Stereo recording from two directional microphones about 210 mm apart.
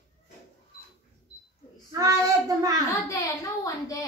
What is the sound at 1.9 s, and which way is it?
Speech, 15° right (ahead or behind).